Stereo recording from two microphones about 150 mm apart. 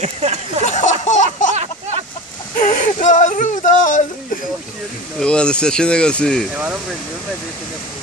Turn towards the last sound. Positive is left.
turn(degrees=-10)  # may be behind; listen again after turning